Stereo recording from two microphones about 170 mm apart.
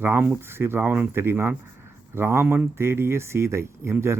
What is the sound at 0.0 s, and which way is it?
A man's voice, 10° right (ahead or behind).